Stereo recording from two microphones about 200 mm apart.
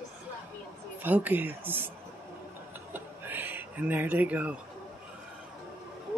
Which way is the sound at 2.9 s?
10° right (ahead or behind).